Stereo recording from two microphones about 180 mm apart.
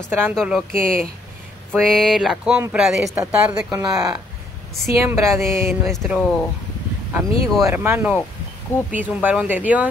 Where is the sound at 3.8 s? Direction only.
20° right (ahead or behind).